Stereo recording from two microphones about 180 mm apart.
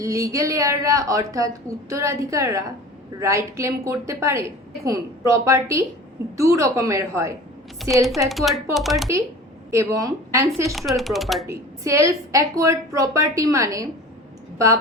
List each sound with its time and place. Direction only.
0.0 s a woman's voice: 20° right (ahead or behind)
8.3 s speech: centre (ahead or behind)
9.7 s a woman's voice: 15° right (ahead or behind)
10.7 s speech: centre (ahead or behind)
11.4 s a woman's voice: 15° right (ahead or behind)